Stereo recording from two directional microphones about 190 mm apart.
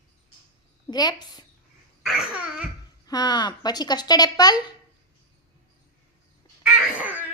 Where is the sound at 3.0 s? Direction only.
20° left (ahead or behind).